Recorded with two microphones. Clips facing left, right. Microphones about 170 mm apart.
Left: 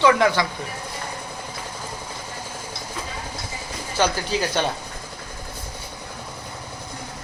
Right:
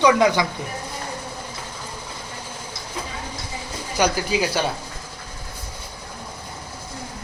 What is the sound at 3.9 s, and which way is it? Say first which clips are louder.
Speech: right 1 dB; 10° right (ahead or behind).